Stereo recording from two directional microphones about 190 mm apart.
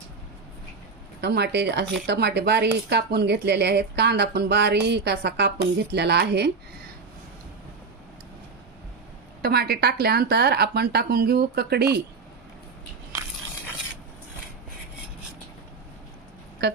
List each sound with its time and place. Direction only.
1.2 s a woman's voice: 60° right (ahead or behind)
9.4 s a woman's voice: 55° right (ahead or behind)
16.6 s music: 60° right (ahead or behind)